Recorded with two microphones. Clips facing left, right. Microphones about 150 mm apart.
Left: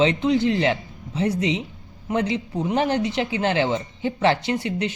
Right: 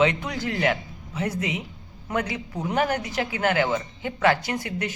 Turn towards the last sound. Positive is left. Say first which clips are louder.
# left 5 dB
turn(degrees=25)  # may be behind; listen again after turning